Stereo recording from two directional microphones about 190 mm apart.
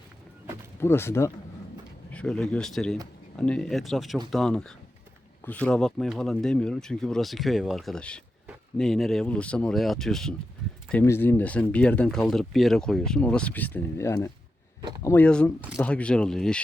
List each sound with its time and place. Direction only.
0.8 s speech: 15° left (ahead or behind)
11.0 s speech: 10° left (ahead or behind)
14.8 s speech: 25° right (ahead or behind)
15.0 s speech: 10° left (ahead or behind)